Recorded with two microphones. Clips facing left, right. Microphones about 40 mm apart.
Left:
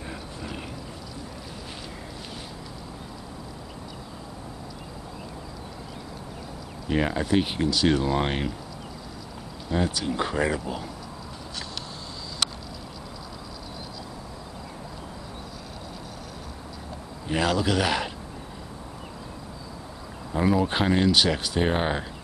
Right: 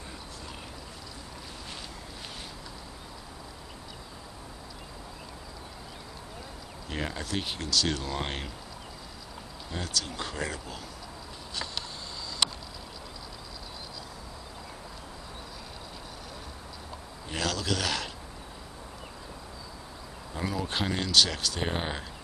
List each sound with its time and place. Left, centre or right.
6.9 s speech: centre
9.7 s speech: centre
17.3 s speech: centre
20.3 s speech: centre